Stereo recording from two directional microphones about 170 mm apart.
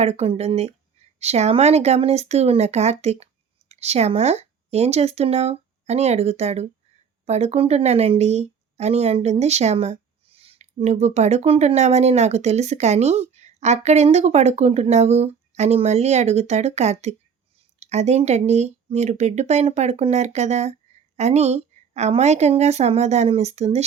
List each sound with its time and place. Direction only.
0.0 s speech: 40° right (ahead or behind)